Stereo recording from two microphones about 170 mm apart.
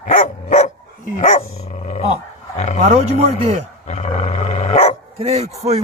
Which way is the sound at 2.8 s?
40° right (ahead or behind).